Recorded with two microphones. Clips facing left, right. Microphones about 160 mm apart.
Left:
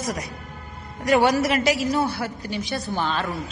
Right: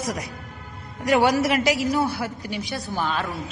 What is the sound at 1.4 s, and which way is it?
Speech, 20° right (ahead or behind).